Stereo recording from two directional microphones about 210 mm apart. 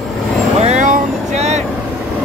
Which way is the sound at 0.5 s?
35° right (ahead or behind).